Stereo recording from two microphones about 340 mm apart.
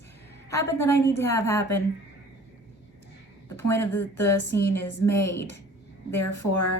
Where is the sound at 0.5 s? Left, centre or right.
Centre.